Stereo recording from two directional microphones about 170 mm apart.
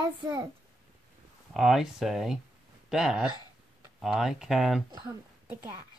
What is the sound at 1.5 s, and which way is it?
Speech, centre (ahead or behind).